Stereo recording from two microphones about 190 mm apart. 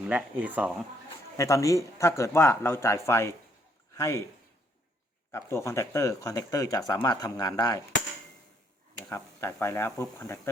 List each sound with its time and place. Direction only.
0.1 s speech: 5° right (ahead or behind)
1.4 s speech: 15° left (ahead or behind)
5.3 s speech: 15° left (ahead or behind)
9.0 s speech: 15° left (ahead or behind)